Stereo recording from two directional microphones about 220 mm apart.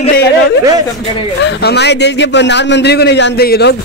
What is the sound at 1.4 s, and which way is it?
A man's voice, 50° left (ahead or behind).